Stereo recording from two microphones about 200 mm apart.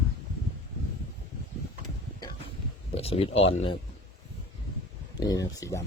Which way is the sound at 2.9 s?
30° left (ahead or behind).